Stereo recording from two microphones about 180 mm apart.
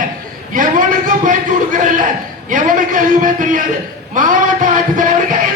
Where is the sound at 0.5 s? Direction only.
50° right (ahead or behind).